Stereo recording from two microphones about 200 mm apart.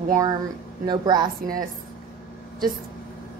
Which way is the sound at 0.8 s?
20° right (ahead or behind).